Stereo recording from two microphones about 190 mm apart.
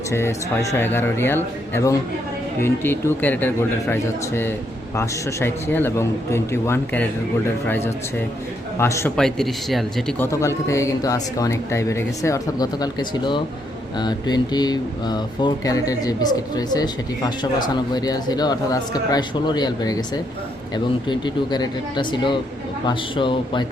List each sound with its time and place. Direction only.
0.1 s speech: 15° left (ahead or behind)
9.1 s speech: centre (ahead or behind)
10.2 s speech: 15° left (ahead or behind)